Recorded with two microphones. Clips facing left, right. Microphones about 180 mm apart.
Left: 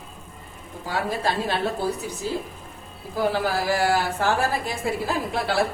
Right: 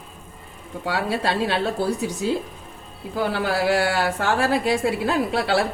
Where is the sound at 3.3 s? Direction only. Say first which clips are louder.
Right 3 dB; 70° right (ahead or behind).